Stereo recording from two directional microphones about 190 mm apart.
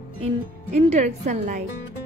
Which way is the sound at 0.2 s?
35° right (ahead or behind).